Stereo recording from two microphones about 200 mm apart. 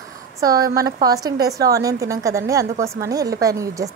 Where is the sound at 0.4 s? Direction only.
15° right (ahead or behind).